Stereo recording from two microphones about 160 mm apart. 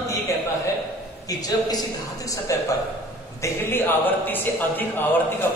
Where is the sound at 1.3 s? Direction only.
25° left (ahead or behind).